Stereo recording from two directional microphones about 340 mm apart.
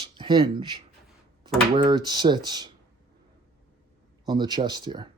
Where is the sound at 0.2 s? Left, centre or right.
Centre.